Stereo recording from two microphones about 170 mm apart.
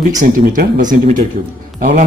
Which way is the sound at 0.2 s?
50° right (ahead or behind).